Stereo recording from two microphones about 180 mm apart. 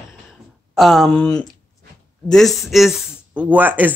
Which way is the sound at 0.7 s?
Centre (ahead or behind).